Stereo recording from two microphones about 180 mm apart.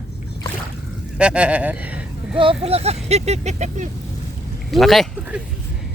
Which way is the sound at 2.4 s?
30° right (ahead or behind).